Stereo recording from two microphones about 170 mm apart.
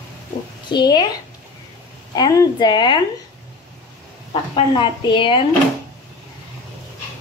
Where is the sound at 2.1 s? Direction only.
25° left (ahead or behind).